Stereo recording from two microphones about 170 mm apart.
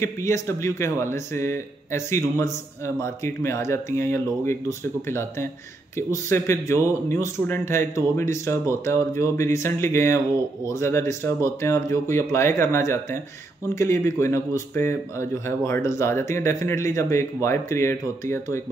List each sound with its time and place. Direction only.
0.0 s speech: 15° left (ahead or behind)